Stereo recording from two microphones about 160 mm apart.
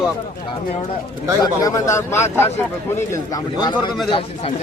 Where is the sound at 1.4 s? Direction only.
20° left (ahead or behind).